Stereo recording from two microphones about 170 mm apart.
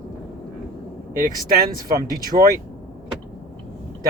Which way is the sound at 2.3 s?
30° right (ahead or behind).